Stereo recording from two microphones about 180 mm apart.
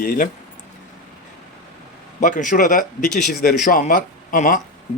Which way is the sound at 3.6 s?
45° left (ahead or behind).